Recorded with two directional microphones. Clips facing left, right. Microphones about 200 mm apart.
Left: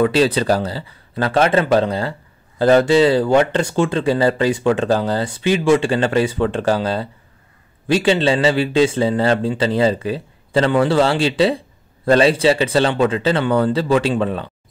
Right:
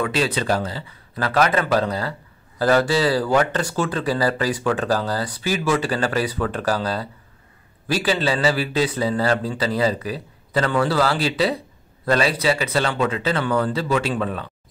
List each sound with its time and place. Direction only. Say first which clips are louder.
0.0 s a man's voice: left 7 dB; 30° left (ahead or behind)